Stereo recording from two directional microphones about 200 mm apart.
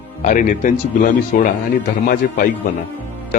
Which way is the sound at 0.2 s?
40° left (ahead or behind).